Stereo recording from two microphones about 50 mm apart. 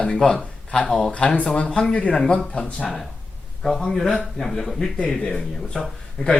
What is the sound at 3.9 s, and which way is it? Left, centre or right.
Speech, centre.